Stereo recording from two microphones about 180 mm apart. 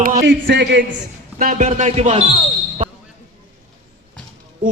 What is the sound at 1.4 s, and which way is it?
Speech, 50° right (ahead or behind).